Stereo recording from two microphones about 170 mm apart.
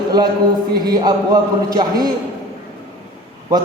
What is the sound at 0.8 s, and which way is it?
Speech, 25° right (ahead or behind).